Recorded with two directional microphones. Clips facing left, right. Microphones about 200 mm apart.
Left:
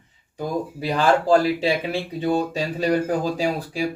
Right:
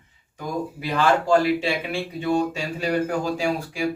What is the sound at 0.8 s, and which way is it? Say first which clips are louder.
Speech: left 2 dB; 35° left (ahead or behind).